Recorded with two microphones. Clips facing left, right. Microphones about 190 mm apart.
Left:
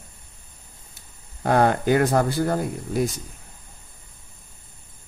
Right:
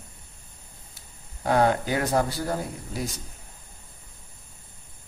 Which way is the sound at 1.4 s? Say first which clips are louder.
Left 3 dB; 55° left (ahead or behind).